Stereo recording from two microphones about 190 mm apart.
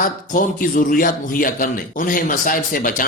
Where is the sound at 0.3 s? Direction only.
50° left (ahead or behind).